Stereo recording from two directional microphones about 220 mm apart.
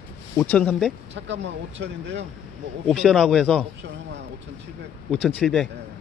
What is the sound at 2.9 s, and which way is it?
Speech, centre (ahead or behind).